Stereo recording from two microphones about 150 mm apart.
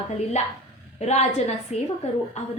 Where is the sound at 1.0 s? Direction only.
45° left (ahead or behind).